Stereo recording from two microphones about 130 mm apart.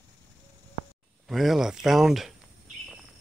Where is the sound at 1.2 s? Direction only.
Centre (ahead or behind).